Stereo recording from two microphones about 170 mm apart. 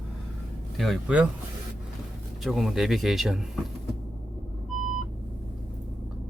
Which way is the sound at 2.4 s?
Centre (ahead or behind).